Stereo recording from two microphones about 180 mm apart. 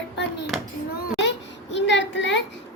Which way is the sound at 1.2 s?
85° left.